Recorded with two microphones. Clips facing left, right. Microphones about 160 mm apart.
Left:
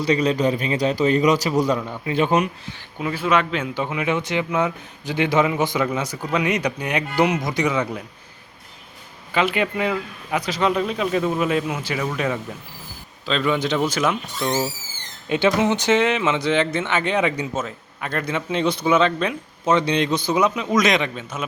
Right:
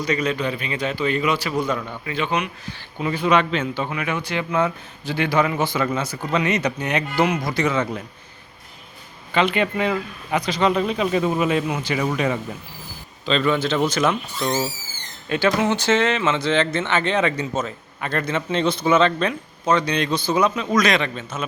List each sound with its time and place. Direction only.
0.0 s a man's voice: 30° left (ahead or behind)
3.0 s speech: 5° left (ahead or behind)
9.3 s a man's voice: 5° left (ahead or behind)
19.6 s speech: 25° left (ahead or behind)